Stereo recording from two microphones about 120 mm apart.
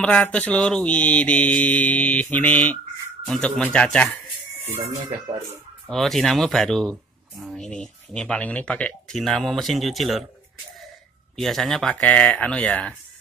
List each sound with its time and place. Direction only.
0.0 s mantra: 10° left (ahead or behind)
3.3 s speech: 5° left (ahead or behind)
4.6 s speech: 20° right (ahead or behind)
5.9 s speech: centre (ahead or behind)
11.3 s mantra: centre (ahead or behind)